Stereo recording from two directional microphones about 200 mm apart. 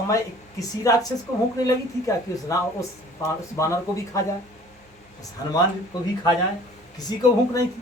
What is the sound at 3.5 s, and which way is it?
Speech, 15° left (ahead or behind).